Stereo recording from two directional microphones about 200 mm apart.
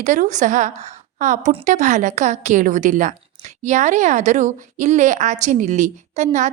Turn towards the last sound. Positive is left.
turn(degrees=-35)  # may be behind; listen again after turning